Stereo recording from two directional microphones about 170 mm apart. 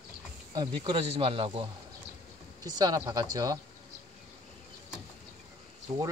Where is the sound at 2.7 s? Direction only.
20° right (ahead or behind).